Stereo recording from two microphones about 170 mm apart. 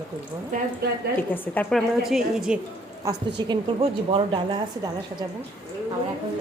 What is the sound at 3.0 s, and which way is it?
A woman's voice, 25° right (ahead or behind).